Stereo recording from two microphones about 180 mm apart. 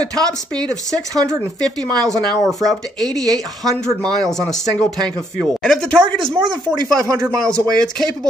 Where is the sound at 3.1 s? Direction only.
20° right (ahead or behind).